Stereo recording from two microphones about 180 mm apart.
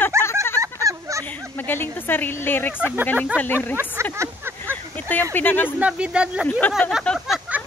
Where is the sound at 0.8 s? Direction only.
15° right (ahead or behind).